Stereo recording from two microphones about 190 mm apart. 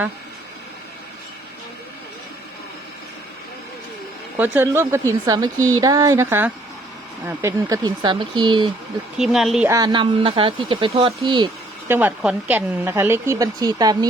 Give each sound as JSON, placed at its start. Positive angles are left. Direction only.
{"t": 4.4, "sound": "speech", "side_deg": -10}
{"t": 9.1, "sound": "speech", "side_deg": 0}
{"t": 9.6, "sound": "speech", "side_deg": -20}
{"t": 11.9, "sound": "speech", "side_deg": -10}